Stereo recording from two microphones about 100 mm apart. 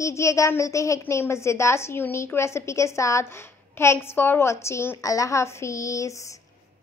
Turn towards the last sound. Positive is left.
turn(degrees=30)  # may be behind; listen again after turning